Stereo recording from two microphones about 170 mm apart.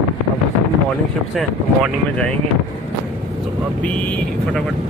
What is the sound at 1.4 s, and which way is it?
Speech, 5° left (ahead or behind).